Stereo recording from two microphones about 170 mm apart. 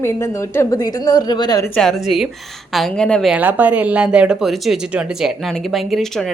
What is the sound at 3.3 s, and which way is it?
Speech, 10° right (ahead or behind).